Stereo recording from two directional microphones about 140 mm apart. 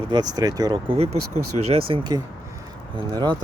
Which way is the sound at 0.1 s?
30° right (ahead or behind).